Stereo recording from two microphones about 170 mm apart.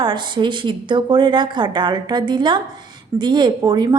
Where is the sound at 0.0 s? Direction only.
25° right (ahead or behind).